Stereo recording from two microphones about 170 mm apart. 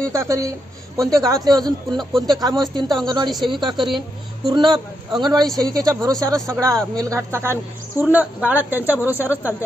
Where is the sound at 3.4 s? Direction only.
25° right (ahead or behind); by 9.5 s 10° right (ahead or behind).